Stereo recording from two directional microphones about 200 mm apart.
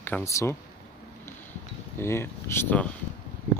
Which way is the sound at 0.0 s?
10° left (ahead or behind).